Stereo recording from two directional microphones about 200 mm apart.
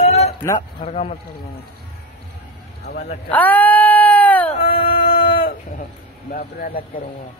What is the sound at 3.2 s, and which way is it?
Bleat, 10° left (ahead or behind).